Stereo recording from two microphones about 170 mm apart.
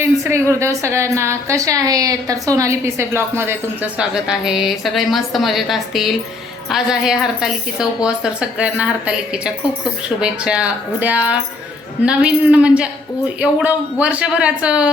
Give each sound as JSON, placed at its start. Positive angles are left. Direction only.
{"t": 0.0, "sound": "a woman's voice", "side_deg": -15}
{"t": 3.9, "sound": "a woman's voice", "side_deg": -5}